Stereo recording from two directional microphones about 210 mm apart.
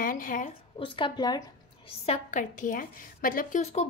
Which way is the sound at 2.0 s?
35° left (ahead or behind).